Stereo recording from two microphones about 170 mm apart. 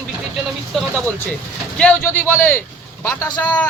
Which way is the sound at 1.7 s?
5° left (ahead or behind).